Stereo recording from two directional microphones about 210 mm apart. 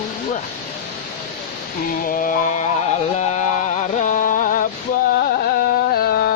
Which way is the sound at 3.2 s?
35° left (ahead or behind).